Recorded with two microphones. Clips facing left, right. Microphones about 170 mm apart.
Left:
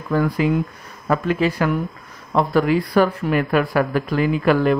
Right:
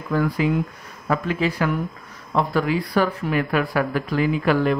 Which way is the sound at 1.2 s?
50° left (ahead or behind).